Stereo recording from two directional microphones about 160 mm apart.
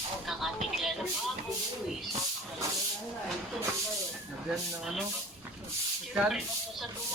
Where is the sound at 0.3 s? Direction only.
Centre (ahead or behind).